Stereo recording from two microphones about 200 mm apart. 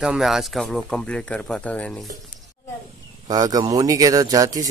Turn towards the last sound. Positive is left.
turn(degrees=-20)  # may be behind; listen again after turning